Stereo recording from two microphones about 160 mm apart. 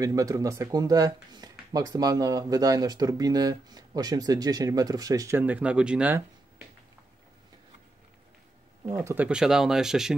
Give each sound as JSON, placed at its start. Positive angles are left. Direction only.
{"t": 0.0, "sound": "speech", "side_deg": -20}
{"t": 8.8, "sound": "speech", "side_deg": -15}